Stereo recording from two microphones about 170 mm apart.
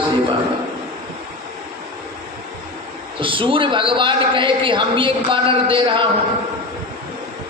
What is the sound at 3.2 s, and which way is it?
A man's voice, 30° right (ahead or behind).